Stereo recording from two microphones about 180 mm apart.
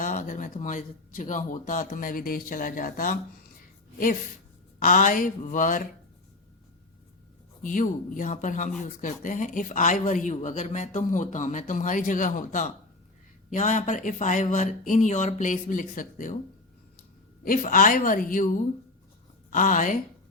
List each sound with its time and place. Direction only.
0.0 s speech: 45° left (ahead or behind)
4.8 s speech: 45° left (ahead or behind)
7.6 s speech: 45° left (ahead or behind)
17.4 s speech: 45° left (ahead or behind)
19.5 s speech: 45° left (ahead or behind)